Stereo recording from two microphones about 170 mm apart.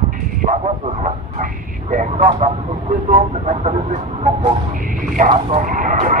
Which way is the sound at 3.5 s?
40° right (ahead or behind).